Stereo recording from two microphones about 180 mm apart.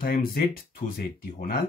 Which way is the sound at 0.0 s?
55° left (ahead or behind).